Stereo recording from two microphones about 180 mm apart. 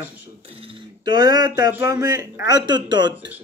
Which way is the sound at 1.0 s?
20° right (ahead or behind).